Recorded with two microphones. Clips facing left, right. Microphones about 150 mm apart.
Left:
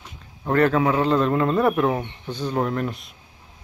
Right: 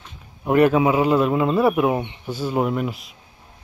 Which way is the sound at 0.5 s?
15° right (ahead or behind).